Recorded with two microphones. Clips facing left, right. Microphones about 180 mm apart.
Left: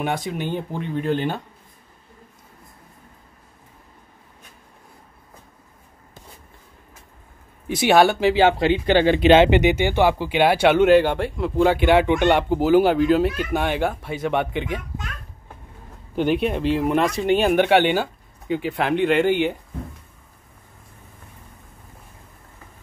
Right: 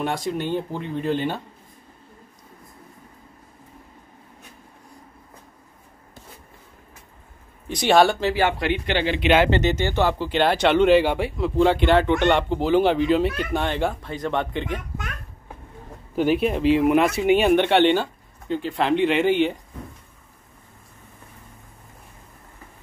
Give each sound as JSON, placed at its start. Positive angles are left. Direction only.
{"t": 0.0, "sound": "speech", "side_deg": 0}
{"t": 7.6, "sound": "speech", "side_deg": 5}
{"t": 8.2, "sound": "speech", "side_deg": 15}
{"t": 8.5, "sound": "speech", "side_deg": 30}
{"t": 9.0, "sound": "speech", "side_deg": 45}
{"t": 9.3, "sound": "speech", "side_deg": 20}
{"t": 16.2, "sound": "speech", "side_deg": 0}